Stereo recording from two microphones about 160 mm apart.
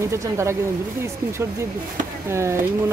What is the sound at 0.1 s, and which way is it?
Speech, 20° right (ahead or behind).